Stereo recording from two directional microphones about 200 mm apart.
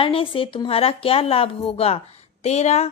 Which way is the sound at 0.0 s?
25° left (ahead or behind).